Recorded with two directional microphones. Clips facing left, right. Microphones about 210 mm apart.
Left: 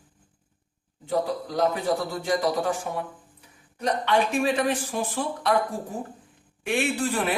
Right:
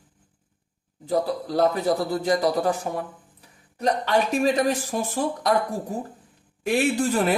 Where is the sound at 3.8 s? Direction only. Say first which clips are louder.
Right 1 dB; 40° right (ahead or behind).